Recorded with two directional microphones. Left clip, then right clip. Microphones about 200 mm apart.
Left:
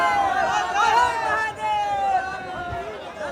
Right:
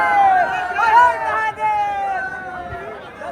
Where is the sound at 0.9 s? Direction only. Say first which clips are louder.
Right 6 dB; 5° left (ahead or behind).